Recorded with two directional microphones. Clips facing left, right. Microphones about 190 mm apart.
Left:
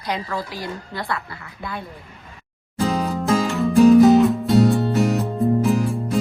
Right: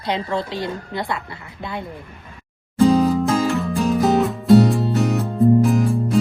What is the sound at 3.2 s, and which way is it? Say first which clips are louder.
Music: even; centre (ahead or behind).